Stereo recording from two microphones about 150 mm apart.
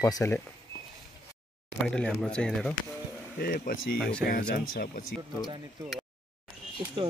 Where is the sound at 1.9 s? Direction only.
5° left (ahead or behind).